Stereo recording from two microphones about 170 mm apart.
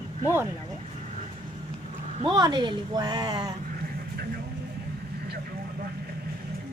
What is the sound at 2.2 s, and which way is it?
Speech, 25° right (ahead or behind).